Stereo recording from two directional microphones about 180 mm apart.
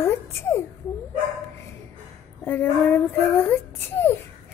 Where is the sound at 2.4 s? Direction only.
10° left (ahead or behind).